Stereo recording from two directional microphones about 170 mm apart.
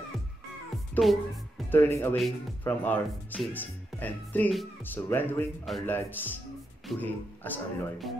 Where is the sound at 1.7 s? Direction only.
10° left (ahead or behind).